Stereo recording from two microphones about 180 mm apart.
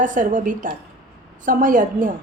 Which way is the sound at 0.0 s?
45° right (ahead or behind).